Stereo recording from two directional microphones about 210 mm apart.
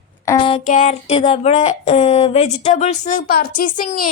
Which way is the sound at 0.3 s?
25° left (ahead or behind).